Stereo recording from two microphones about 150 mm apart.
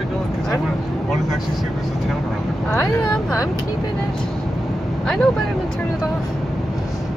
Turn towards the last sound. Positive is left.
turn(degrees=5)  # may be behind; listen again after turning